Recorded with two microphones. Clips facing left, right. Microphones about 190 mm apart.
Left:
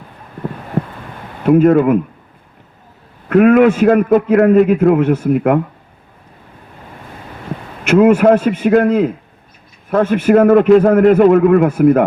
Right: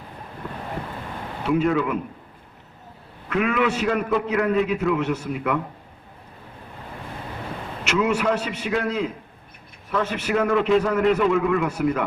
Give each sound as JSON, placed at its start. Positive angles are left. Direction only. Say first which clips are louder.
{"t": 1.5, "sound": "a man's voice", "louder": "left 12 dB", "side_deg": 50}
{"t": 3.2, "sound": "a man's voice", "louder": "left 13 dB", "side_deg": 50}
{"t": 7.9, "sound": "a man's voice", "louder": "left 13 dB", "side_deg": 50}